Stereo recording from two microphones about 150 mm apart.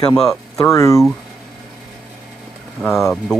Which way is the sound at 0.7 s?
20° left (ahead or behind).